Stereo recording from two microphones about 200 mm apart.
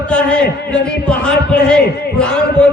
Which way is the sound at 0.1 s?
5° left (ahead or behind).